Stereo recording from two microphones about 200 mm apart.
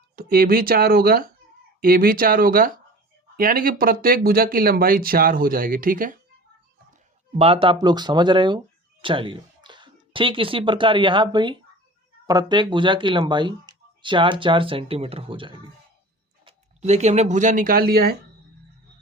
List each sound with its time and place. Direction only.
0.2 s speech: 45° right (ahead or behind)
7.3 s speech: 30° right (ahead or behind); by 18.2 s 50° right (ahead or behind)